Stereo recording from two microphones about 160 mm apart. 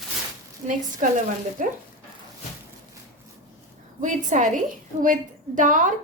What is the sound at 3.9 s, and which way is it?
A woman's voice, 50° right (ahead or behind).